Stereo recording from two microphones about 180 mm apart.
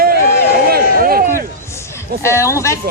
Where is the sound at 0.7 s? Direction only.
55° right (ahead or behind).